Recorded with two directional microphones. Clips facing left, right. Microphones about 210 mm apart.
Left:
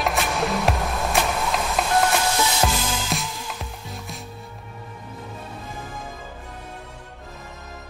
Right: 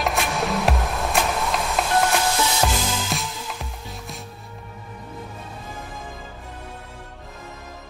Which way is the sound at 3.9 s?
Centre (ahead or behind).